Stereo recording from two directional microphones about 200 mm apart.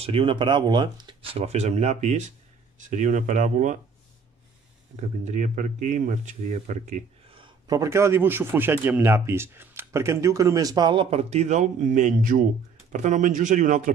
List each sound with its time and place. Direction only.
0.0 s speech: 25° right (ahead or behind)
5.2 s speech: 35° right (ahead or behind)